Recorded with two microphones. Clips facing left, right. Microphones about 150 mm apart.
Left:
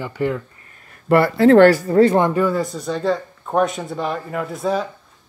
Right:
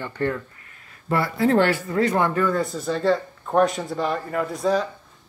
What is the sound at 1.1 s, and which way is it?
Speech, 65° left (ahead or behind).